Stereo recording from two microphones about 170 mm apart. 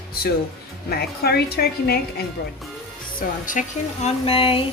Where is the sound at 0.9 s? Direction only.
65° left (ahead or behind).